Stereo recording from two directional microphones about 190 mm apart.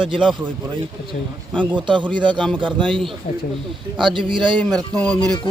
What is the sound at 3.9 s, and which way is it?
Speech, 25° right (ahead or behind).